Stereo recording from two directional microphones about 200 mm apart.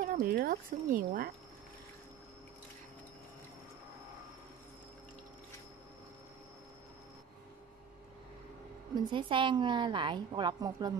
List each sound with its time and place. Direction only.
0.0 s speech: 45° right (ahead or behind)
8.9 s a woman's voice: 25° right (ahead or behind)